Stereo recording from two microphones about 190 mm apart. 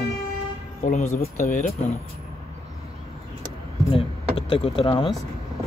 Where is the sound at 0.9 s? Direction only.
40° left (ahead or behind).